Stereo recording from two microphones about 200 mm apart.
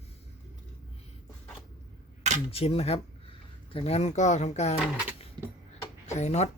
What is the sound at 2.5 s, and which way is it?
Speech, 30° left (ahead or behind).